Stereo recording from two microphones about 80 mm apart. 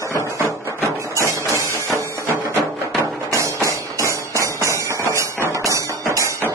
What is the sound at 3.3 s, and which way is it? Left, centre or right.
Music, right.